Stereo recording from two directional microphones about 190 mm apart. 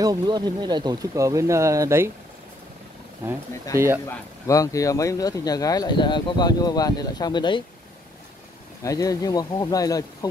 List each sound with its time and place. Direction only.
0.0 s speech: 20° right (ahead or behind)
3.7 s speech: 15° right (ahead or behind)
4.5 s speech: 15° left (ahead or behind)
8.8 s speech: 20° left (ahead or behind)